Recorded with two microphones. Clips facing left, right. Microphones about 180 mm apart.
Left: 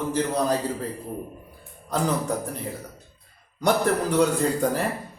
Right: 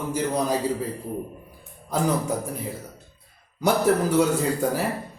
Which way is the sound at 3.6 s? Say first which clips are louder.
Right 2 dB; 5° right (ahead or behind).